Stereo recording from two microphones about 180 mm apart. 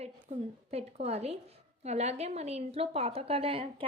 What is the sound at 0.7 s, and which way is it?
Speech, 35° right (ahead or behind).